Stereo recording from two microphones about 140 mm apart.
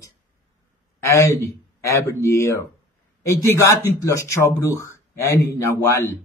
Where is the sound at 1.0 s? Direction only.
20° left (ahead or behind).